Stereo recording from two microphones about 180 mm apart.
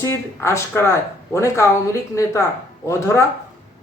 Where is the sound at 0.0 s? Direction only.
15° left (ahead or behind).